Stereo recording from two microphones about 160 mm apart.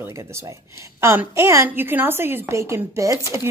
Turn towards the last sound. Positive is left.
turn(degrees=-20)  # may be behind; listen again after turning